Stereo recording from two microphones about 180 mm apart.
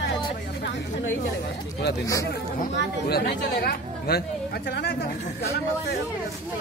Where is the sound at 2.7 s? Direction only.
60° left (ahead or behind).